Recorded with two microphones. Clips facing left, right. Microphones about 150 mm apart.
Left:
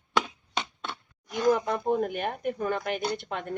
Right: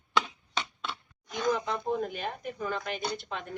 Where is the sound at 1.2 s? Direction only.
10° left (ahead or behind).